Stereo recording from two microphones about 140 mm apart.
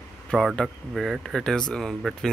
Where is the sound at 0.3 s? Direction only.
Centre (ahead or behind).